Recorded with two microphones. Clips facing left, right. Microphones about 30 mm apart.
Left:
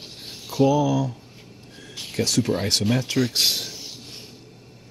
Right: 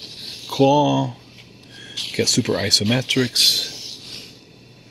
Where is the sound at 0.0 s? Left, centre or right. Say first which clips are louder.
Right 4 dB; right.